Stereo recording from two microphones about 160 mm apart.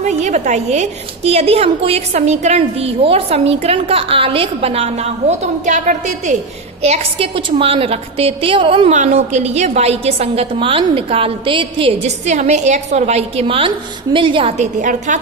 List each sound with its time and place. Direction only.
0.0 s a woman's voice: 45° right (ahead or behind)
8.9 s a woman's voice: 45° right (ahead or behind); by 14.5 s 30° right (ahead or behind)
14.6 s a woman's voice: 50° right (ahead or behind)